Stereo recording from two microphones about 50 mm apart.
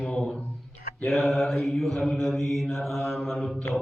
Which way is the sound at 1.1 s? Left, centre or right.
Centre.